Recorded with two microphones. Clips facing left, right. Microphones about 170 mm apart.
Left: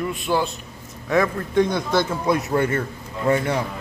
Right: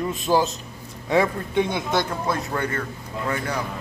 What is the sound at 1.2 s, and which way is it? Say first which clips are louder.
Speech: left 2 dB; 20° right (ahead or behind).